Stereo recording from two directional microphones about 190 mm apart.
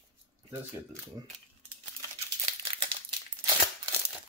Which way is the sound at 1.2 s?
20° right (ahead or behind).